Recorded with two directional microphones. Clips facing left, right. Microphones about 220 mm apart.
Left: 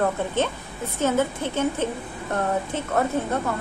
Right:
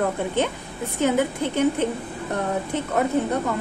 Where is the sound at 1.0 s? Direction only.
15° right (ahead or behind).